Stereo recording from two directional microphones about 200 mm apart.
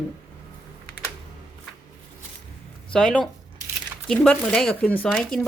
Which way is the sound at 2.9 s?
5° left (ahead or behind).